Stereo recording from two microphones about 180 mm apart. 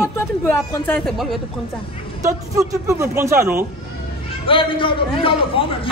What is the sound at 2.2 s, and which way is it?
Speech, 15° right (ahead or behind).